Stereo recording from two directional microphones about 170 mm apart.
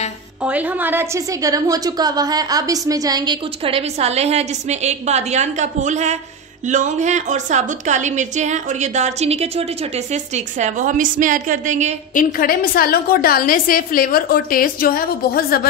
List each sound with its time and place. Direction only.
0.4 s a woman's voice: 10° right (ahead or behind); by 11.9 s 45° right (ahead or behind)
12.1 s a woman's voice: 55° left (ahead or behind)